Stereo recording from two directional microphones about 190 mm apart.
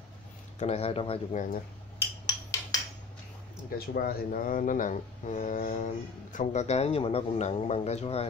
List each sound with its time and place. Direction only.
0.6 s speech: 35° left (ahead or behind)
2.7 s cutlery: 20° left (ahead or behind)
3.7 s speech: 55° left (ahead or behind); by 8.3 s 30° left (ahead or behind)